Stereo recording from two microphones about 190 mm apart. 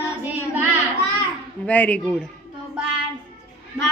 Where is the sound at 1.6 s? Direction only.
10° left (ahead or behind).